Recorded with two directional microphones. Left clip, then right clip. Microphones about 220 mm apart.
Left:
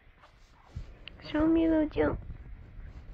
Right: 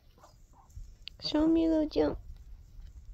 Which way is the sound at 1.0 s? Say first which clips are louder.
Even; 25° right (ahead or behind).